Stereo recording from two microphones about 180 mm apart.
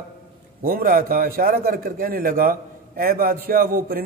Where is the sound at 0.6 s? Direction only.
55° right (ahead or behind).